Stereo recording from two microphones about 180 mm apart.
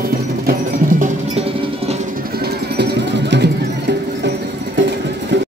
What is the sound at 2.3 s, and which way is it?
Music, 60° right (ahead or behind).